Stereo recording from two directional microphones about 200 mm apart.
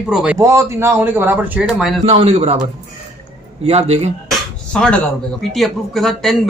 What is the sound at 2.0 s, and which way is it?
Speech, 30° right (ahead or behind).